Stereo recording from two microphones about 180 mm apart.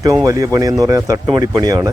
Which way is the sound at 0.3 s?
20° right (ahead or behind).